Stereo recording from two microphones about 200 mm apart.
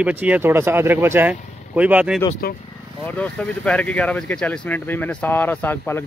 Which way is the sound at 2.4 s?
50° left (ahead or behind).